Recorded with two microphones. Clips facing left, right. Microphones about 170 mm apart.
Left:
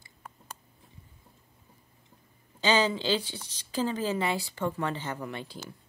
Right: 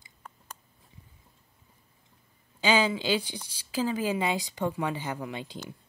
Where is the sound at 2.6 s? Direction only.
10° right (ahead or behind).